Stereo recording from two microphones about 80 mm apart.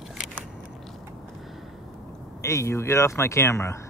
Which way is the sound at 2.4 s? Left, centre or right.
Left.